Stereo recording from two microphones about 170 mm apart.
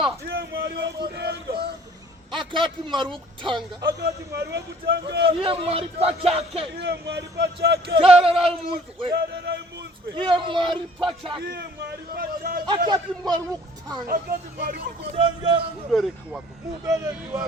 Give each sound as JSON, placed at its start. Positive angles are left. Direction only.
{"t": 0.3, "sound": "speech", "side_deg": -70}
{"t": 2.3, "sound": "speech", "side_deg": -30}
{"t": 4.4, "sound": "speech", "side_deg": -80}
{"t": 5.4, "sound": "speech", "side_deg": -35}
{"t": 6.7, "sound": "speech", "side_deg": -90}
{"t": 7.9, "sound": "speech", "side_deg": -35}
{"t": 10.2, "sound": "speech", "side_deg": -30}
{"t": 11.4, "sound": "a man's voice", "side_deg": -70}
{"t": 12.6, "sound": "speech", "side_deg": -25}
{"t": 14.1, "sound": "a man's voice", "side_deg": -60}
{"t": 15.1, "sound": "speech", "side_deg": -30}
{"t": 15.9, "sound": "speech", "side_deg": 0}
{"t": 16.8, "sound": "speech", "side_deg": -20}